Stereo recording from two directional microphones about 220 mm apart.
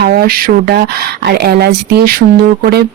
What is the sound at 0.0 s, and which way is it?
Speech, 45° right (ahead or behind).